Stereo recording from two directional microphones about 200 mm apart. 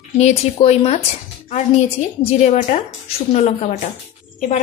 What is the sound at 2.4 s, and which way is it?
Speech, 35° left (ahead or behind).